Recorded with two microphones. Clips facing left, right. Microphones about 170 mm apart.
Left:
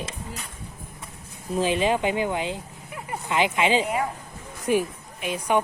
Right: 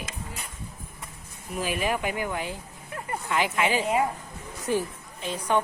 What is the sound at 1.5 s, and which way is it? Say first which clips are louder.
A woman's voice: left 5 dB; 25° left (ahead or behind).